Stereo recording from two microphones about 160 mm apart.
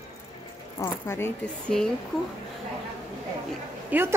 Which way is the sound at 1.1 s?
10° left (ahead or behind).